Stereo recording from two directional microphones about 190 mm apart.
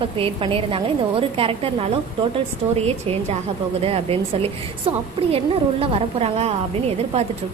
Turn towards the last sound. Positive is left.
turn(degrees=-35)  # may be behind; listen again after turning